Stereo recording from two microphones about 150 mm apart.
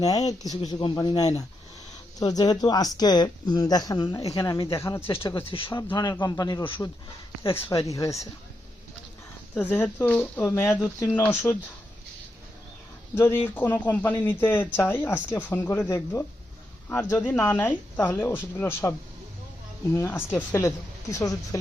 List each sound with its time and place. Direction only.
0.0 s speech: 25° left (ahead or behind)
5.5 s speech: 35° left (ahead or behind)
7.5 s speech: 20° left (ahead or behind)
9.6 s speech: 15° left (ahead or behind)
13.1 s speech: 15° left (ahead or behind)
19.9 s speech: 15° left (ahead or behind)